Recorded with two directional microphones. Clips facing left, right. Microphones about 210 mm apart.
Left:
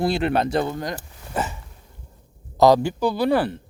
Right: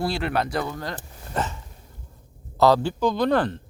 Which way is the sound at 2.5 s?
15° left (ahead or behind).